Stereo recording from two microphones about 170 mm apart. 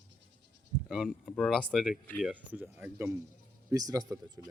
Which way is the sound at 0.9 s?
Centre (ahead or behind).